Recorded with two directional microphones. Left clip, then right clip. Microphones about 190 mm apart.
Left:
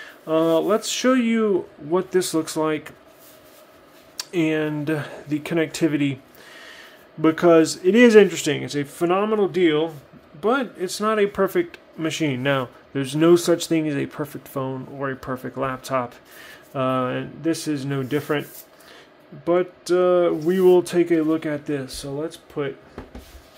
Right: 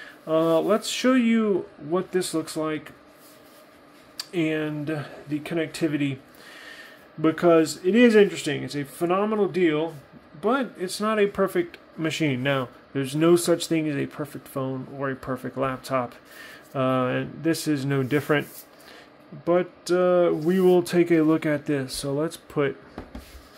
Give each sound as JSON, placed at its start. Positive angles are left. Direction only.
{"t": 0.0, "sound": "speech", "side_deg": 10}
{"t": 4.2, "sound": "speech", "side_deg": 15}
{"t": 6.5, "sound": "speech", "side_deg": 5}
{"t": 12.0, "sound": "speech", "side_deg": 0}
{"t": 19.4, "sound": "speech", "side_deg": 0}